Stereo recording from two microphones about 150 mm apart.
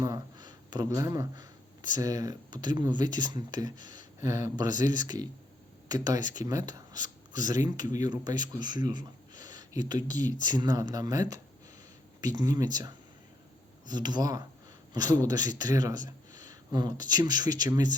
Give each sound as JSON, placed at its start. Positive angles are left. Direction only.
{"t": 0.0, "sound": "speech", "side_deg": -25}